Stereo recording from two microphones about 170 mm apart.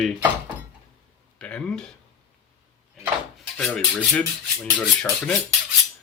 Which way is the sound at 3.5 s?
5° left (ahead or behind).